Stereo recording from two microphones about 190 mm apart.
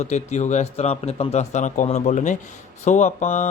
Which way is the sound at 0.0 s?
35° left (ahead or behind).